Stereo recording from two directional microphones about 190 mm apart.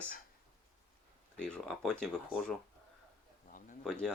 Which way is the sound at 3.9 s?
5° left (ahead or behind).